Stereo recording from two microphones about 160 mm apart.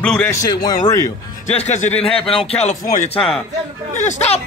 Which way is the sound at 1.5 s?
45° left (ahead or behind).